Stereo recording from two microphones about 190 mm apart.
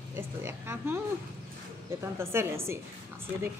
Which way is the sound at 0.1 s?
15° right (ahead or behind).